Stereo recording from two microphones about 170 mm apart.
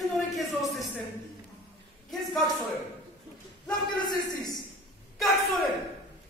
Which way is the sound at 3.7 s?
25° left (ahead or behind).